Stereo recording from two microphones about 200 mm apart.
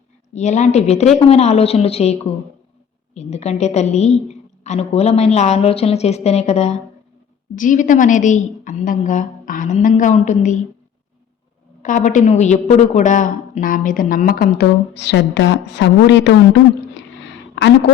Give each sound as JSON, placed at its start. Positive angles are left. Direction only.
{"t": 0.3, "sound": "a woman's voice", "side_deg": 35}
{"t": 11.8, "sound": "a woman's voice", "side_deg": 40}
{"t": 17.5, "sound": "a sound", "side_deg": 60}